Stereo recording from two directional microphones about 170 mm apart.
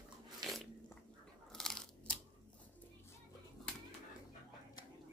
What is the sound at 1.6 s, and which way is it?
Crunch, 5° left (ahead or behind).